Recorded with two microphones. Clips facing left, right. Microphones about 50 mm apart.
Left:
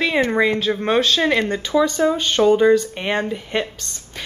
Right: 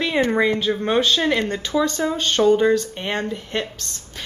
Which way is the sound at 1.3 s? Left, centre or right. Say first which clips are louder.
Left 2 dB; centre.